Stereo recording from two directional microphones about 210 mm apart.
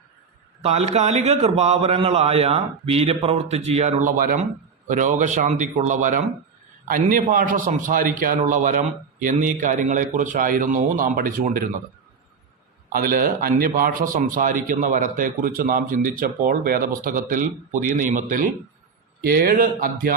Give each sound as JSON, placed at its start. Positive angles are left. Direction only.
{"t": 0.6, "sound": "a man's voice", "side_deg": -30}
{"t": 12.9, "sound": "a man's voice", "side_deg": -45}